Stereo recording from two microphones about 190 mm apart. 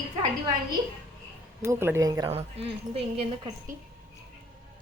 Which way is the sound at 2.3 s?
30° right (ahead or behind).